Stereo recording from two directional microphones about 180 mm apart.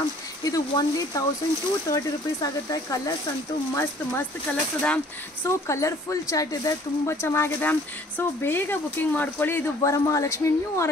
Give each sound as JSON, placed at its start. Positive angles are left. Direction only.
{"t": 0.4, "sound": "speech", "side_deg": 20}
{"t": 3.7, "sound": "speech", "side_deg": 10}